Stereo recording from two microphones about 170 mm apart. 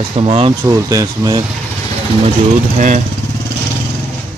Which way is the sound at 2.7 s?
50° right (ahead or behind).